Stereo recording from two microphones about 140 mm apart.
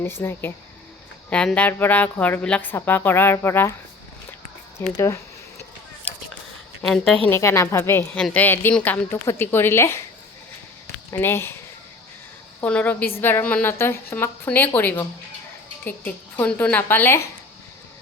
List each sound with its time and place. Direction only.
0.0 s a woman's voice: 15° left (ahead or behind)
4.9 s a woman's voice: 20° left (ahead or behind)
6.8 s a woman's voice: 5° left (ahead or behind)
7.3 s a woman's voice: 20° left (ahead or behind)
11.1 s a woman's voice: 15° left (ahead or behind)
12.6 s a woman's voice: 10° left (ahead or behind)